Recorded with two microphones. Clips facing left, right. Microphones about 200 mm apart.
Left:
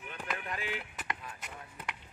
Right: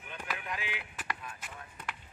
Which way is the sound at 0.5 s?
45° left (ahead or behind).